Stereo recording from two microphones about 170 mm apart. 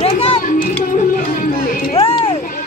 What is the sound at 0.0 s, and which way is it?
Music, 35° left (ahead or behind).